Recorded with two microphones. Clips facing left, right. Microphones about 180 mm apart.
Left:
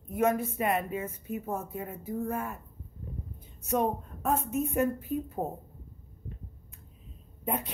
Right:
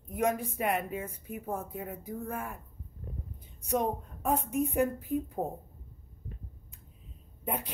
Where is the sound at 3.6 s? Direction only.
15° right (ahead or behind).